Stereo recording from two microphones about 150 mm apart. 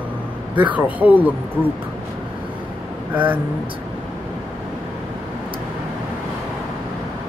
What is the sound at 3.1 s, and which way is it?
Speech, 10° right (ahead or behind).